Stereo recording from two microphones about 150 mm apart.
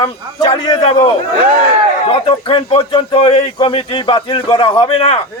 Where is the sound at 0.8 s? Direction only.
40° left (ahead or behind).